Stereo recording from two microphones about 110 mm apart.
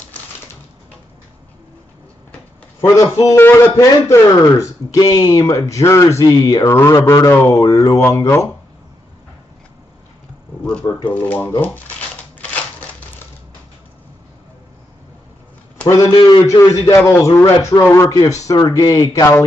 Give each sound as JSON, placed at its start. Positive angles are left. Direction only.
{"t": 2.8, "sound": "speech", "side_deg": 30}
{"t": 6.2, "sound": "speech", "side_deg": 35}
{"t": 6.7, "sound": "speech", "side_deg": 25}
{"t": 10.6, "sound": "speech", "side_deg": 15}
{"t": 11.6, "sound": "a sound", "side_deg": 15}
{"t": 16.3, "sound": "speech", "side_deg": 30}